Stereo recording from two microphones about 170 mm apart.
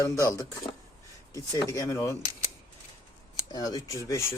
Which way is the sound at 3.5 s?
20° left (ahead or behind).